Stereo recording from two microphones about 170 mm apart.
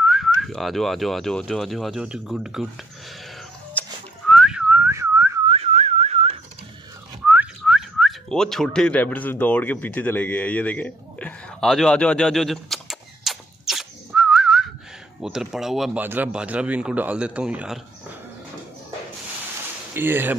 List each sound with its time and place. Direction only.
0.0 s speech: centre (ahead or behind)
3.8 s music: 10° left (ahead or behind)
4.3 s whistling: 5° right (ahead or behind)
5.5 s whistling: 40° right (ahead or behind)
7.2 s whistling: 5° right (ahead or behind)
15.1 s speech: 5° right (ahead or behind)
19.9 s speech: 10° right (ahead or behind)